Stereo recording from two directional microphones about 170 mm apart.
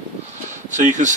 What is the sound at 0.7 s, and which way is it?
Speech, 45° right (ahead or behind).